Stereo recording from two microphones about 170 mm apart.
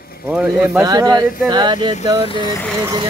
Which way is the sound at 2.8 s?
25° right (ahead or behind).